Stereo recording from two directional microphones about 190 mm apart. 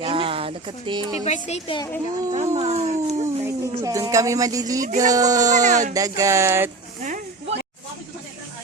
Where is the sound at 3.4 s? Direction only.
15° right (ahead or behind).